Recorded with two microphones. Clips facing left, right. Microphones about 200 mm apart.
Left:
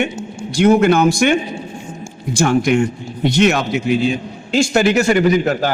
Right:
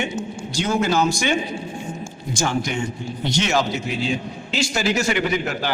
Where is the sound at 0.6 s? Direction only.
60° left (ahead or behind).